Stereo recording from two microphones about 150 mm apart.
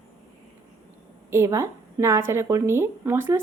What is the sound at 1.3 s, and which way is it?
A woman's voice, 20° right (ahead or behind).